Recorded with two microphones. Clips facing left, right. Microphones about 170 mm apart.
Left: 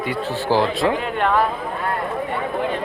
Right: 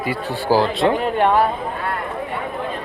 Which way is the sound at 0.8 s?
25° right (ahead or behind).